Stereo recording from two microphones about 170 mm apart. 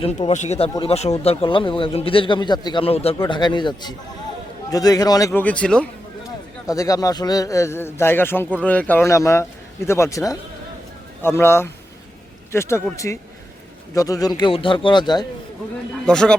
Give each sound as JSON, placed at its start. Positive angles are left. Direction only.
{"t": 0.0, "sound": "a man's voice", "side_deg": 40}
{"t": 6.7, "sound": "a man's voice", "side_deg": 20}
{"t": 16.0, "sound": "speech", "side_deg": 5}